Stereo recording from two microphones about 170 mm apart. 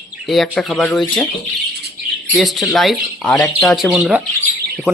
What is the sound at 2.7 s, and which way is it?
Speech, centre (ahead or behind).